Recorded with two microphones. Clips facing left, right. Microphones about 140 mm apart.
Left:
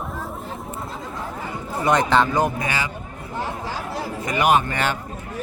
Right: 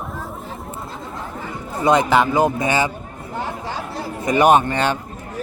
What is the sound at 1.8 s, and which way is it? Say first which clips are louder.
Speech: right 3 dB; 10° right (ahead or behind).